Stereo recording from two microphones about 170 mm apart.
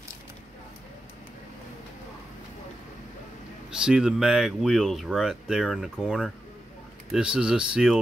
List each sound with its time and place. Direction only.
3.7 s speech: 5° right (ahead or behind)